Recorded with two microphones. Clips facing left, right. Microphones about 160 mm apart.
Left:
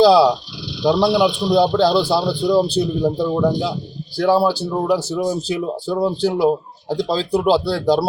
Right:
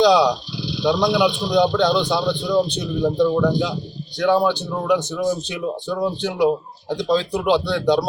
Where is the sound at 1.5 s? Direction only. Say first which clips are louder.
Left 2 dB; 35° left (ahead or behind).